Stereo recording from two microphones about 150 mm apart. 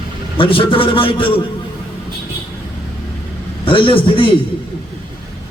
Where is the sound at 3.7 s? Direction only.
35° left (ahead or behind).